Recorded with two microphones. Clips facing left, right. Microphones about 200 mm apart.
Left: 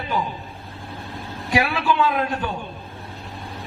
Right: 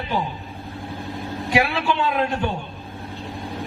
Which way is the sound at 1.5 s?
25° right (ahead or behind).